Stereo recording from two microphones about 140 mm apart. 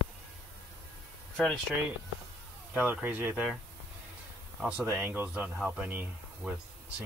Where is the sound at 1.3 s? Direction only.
5° left (ahead or behind).